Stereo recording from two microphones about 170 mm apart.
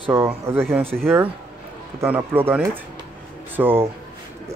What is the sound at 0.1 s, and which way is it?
Speech, 15° right (ahead or behind).